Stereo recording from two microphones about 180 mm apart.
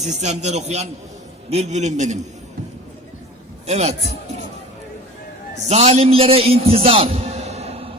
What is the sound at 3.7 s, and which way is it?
Speech, 35° right (ahead or behind).